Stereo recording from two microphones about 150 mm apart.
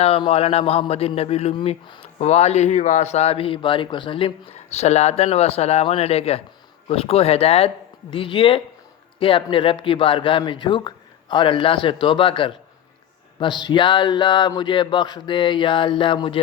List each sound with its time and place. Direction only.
0.0 s a man's voice: 40° left (ahead or behind)